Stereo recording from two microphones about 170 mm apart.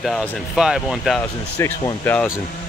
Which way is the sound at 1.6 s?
15° left (ahead or behind).